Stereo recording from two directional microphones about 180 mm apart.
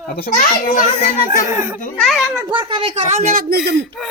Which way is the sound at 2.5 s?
30° right (ahead or behind).